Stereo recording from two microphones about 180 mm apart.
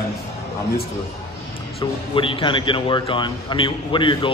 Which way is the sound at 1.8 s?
30° left (ahead or behind).